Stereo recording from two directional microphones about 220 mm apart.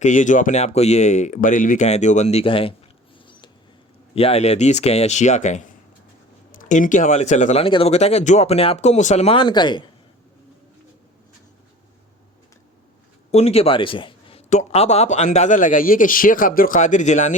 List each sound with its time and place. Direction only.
0.0 s speech: 35° left (ahead or behind)
4.1 s speech: 25° left (ahead or behind)
13.3 s speech: 30° left (ahead or behind)